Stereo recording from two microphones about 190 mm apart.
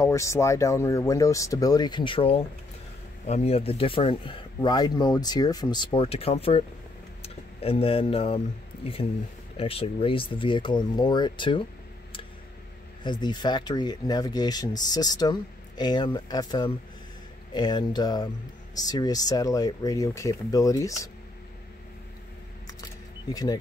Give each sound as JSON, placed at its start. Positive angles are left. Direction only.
{"t": 0.0, "sound": "speech", "side_deg": 15}
{"t": 9.6, "sound": "speech", "side_deg": 30}
{"t": 13.0, "sound": "speech", "side_deg": 25}
{"t": 23.3, "sound": "speech", "side_deg": 20}